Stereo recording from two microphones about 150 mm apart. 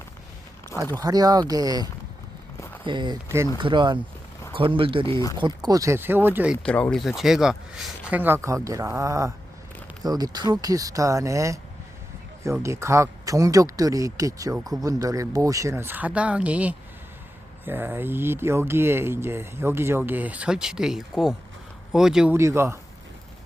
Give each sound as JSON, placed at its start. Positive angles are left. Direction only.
{"t": 0.9, "sound": "speech", "side_deg": -25}
{"t": 3.2, "sound": "speech", "side_deg": -20}
{"t": 3.6, "sound": "speech", "side_deg": -30}
{"t": 6.6, "sound": "speech", "side_deg": 10}
{"t": 8.2, "sound": "speech", "side_deg": -15}
{"t": 22.3, "sound": "speech", "side_deg": -15}